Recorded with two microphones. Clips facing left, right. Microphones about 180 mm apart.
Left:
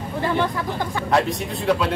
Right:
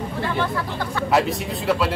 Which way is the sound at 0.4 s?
15° left (ahead or behind).